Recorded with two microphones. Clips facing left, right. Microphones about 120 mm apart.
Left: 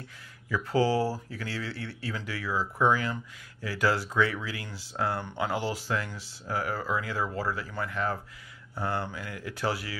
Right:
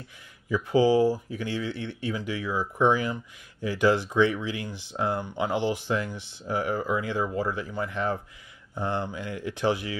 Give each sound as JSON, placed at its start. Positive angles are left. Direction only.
{"t": 0.5, "sound": "speech", "side_deg": -15}